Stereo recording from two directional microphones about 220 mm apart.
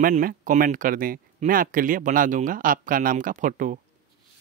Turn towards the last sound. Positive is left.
turn(degrees=-35)  # may be behind; listen again after turning